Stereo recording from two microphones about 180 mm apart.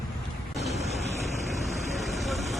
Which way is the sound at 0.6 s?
35° left (ahead or behind).